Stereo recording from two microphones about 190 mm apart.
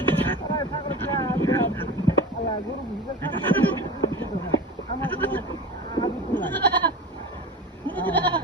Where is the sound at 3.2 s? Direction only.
10° left (ahead or behind).